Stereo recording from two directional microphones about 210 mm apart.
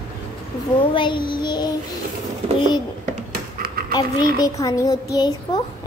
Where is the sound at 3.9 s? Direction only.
20° left (ahead or behind).